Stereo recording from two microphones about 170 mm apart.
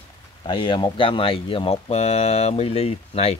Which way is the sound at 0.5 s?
30° left (ahead or behind).